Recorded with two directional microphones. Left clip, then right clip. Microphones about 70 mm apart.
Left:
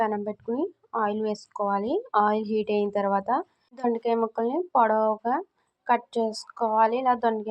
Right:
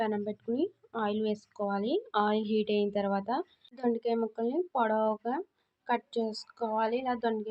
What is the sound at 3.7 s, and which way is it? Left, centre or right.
A woman's voice, left.